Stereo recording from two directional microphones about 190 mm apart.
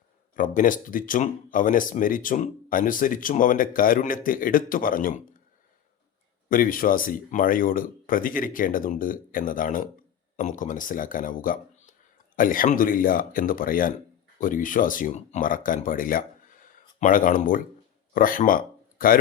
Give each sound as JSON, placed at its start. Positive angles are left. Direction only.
{"t": 0.3, "sound": "speech", "side_deg": 45}
{"t": 6.5, "sound": "speech", "side_deg": 50}